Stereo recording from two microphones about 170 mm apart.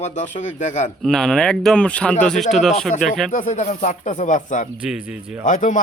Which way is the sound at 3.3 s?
45° left (ahead or behind).